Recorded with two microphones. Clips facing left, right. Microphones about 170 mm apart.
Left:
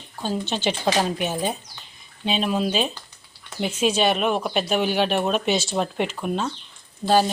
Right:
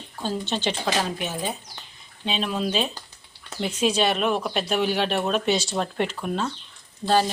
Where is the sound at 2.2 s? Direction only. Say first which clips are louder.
Left 3 dB; 5° left (ahead or behind).